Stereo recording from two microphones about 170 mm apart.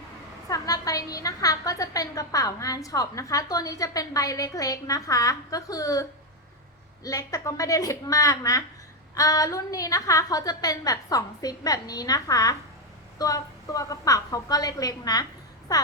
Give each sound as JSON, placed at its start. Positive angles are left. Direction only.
{"t": 0.4, "sound": "a woman's voice", "side_deg": 20}